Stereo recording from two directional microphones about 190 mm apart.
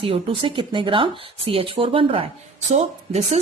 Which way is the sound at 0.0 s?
30° right (ahead or behind).